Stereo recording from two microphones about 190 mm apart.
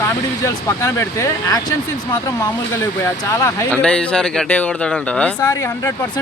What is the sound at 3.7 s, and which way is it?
Speech, 5° left (ahead or behind).